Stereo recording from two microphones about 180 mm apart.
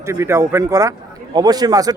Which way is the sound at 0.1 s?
15° right (ahead or behind).